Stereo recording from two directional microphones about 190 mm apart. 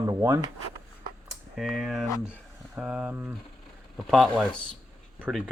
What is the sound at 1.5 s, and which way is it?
Speech, centre (ahead or behind).